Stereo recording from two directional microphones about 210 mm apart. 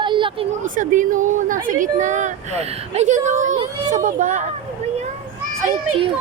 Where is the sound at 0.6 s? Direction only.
40° right (ahead or behind).